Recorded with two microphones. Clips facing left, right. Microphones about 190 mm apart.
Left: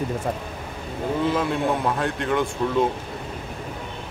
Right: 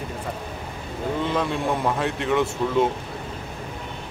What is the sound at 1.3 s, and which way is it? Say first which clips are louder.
Speech: left 1 dB; centre (ahead or behind).